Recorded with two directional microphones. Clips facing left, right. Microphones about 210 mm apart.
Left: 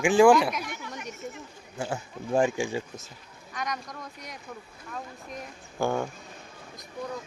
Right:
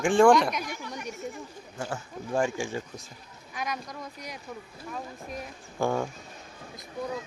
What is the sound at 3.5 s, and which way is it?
Speech, 5° right (ahead or behind).